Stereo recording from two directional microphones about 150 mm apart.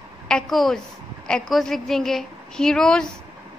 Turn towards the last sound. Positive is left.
turn(degrees=5)  # may be behind; listen again after turning